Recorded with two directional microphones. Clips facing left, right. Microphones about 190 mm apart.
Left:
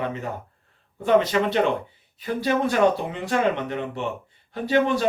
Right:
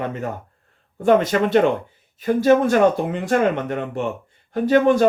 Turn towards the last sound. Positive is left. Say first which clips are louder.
# right 6 dB
turn(degrees=-50)  # may be behind; listen again after turning